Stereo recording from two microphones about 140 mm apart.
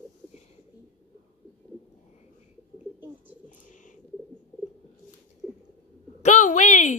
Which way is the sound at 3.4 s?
65° left (ahead or behind).